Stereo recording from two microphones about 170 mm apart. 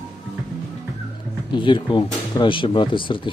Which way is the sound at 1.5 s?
30° left (ahead or behind).